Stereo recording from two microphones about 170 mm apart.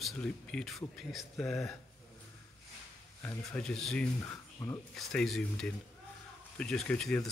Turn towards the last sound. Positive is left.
turn(degrees=5)  # may be behind; listen again after turning